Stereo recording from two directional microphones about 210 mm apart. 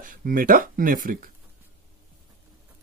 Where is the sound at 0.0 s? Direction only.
40° right (ahead or behind).